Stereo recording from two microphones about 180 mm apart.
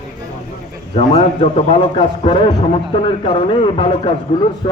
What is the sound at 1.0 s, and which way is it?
A man's voice, 35° left (ahead or behind).